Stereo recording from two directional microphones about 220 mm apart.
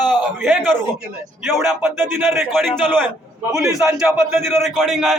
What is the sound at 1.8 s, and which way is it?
A man's voice, 10° right (ahead or behind).